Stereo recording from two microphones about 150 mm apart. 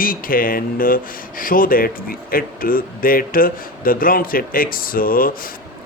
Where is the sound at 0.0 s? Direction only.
70° left (ahead or behind).